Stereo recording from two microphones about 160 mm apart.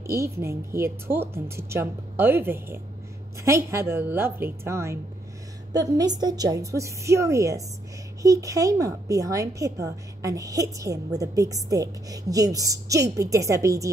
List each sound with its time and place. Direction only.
0.0 s a woman's voice: 20° right (ahead or behind)